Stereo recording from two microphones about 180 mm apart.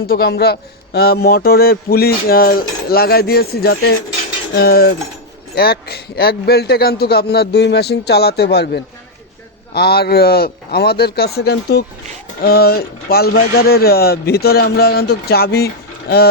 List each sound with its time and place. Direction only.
0.1 s speech: 60° left (ahead or behind)